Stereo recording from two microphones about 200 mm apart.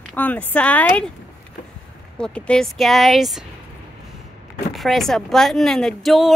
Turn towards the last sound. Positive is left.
turn(degrees=0)  # may be behind; listen again after turning